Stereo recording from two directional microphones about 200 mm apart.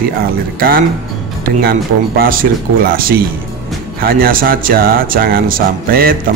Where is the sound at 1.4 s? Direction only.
45° right (ahead or behind).